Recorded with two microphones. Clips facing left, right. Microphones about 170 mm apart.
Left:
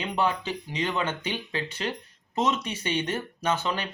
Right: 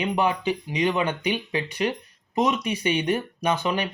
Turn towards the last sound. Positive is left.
turn(degrees=-15)  # may be behind; listen again after turning